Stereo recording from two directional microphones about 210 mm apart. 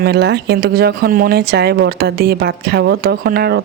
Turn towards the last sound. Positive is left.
turn(degrees=-50)  # may be behind; listen again after turning